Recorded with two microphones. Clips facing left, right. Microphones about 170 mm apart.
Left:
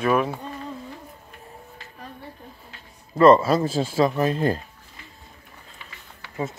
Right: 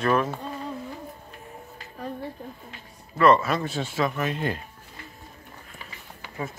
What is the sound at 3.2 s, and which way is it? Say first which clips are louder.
Speech: left 5 dB; 30° left (ahead or behind).